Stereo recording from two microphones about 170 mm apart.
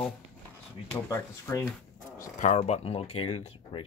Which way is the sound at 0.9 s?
15° left (ahead or behind).